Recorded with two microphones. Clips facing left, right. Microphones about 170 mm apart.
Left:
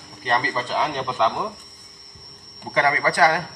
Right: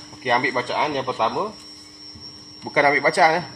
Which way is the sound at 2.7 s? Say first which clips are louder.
Right 3 dB; 25° right (ahead or behind).